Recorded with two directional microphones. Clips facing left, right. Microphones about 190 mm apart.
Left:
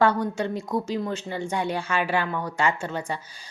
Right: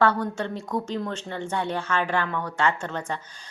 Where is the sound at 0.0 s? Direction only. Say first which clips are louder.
Left 1 dB; 15° left (ahead or behind).